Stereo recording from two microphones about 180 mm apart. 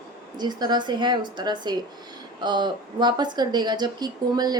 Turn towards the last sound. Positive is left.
turn(degrees=-20)  # may be behind; listen again after turning